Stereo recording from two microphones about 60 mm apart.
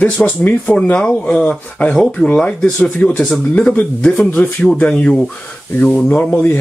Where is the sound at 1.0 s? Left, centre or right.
Centre.